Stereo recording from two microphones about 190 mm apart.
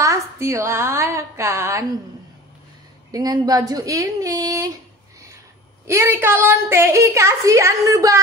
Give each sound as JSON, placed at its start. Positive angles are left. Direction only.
{"t": 0.0, "sound": "a woman's voice", "side_deg": -15}
{"t": 3.1, "sound": "speech", "side_deg": -20}
{"t": 5.9, "sound": "a woman's voice", "side_deg": -15}